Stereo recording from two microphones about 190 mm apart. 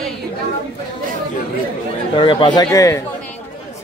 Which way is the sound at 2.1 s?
25° left (ahead or behind).